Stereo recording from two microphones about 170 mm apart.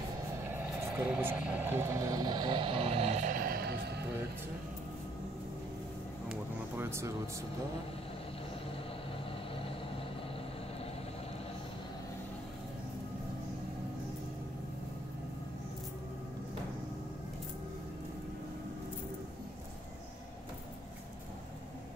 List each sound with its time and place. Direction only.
0.4 s speech: 10° right (ahead or behind); by 4.0 s 75° right (ahead or behind)
6.8 s speech: 15° right (ahead or behind)